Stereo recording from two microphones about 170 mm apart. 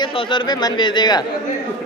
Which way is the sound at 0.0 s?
30° left (ahead or behind).